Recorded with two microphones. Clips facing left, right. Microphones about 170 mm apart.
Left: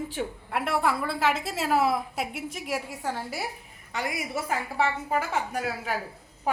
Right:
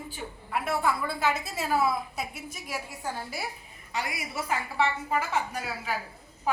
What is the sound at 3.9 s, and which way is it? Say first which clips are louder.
A woman's voice: left 3 dB; 50° left (ahead or behind).